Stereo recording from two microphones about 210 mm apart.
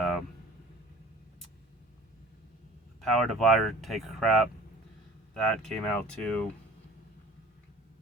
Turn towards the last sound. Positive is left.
turn(degrees=5)  # may be behind; listen again after turning